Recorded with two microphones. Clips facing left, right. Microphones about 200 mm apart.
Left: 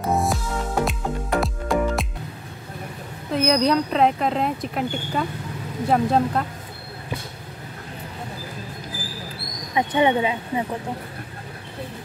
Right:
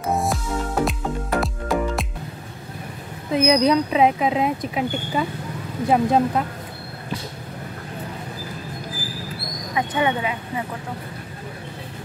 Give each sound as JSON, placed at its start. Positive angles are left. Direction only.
{"t": 0.0, "sound": "music", "side_deg": 0}
{"t": 3.3, "sound": "speech", "side_deg": 0}
{"t": 9.8, "sound": "speech", "side_deg": 25}